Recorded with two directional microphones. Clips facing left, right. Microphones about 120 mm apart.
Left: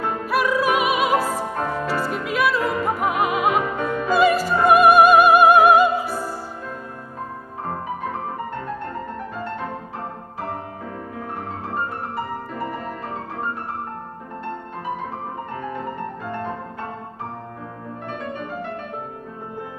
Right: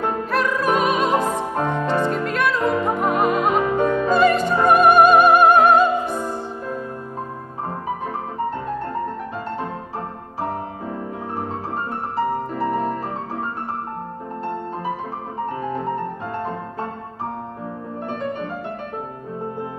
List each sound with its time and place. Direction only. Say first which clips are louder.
0.3 s opera: left 1 dB; 10° left (ahead or behind)
1.1 s music: right 1 dB; 20° right (ahead or behind)
2.0 s music: right 1 dB; 5° left (ahead or behind)
3.8 s opera: right 1 dB; 5° left (ahead or behind)